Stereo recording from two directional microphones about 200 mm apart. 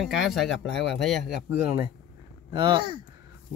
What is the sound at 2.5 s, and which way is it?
Speech, 25° right (ahead or behind).